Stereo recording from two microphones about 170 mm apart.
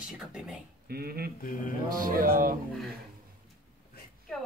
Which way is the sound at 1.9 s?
55° right (ahead or behind).